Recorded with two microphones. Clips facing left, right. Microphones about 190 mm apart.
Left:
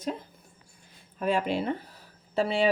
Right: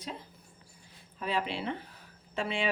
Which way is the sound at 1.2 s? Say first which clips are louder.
Left 6 dB; 45° left (ahead or behind).